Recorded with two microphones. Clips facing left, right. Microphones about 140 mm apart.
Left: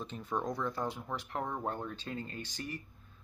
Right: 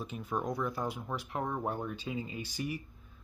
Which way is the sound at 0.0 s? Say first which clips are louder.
Right 1 dB; 5° right (ahead or behind).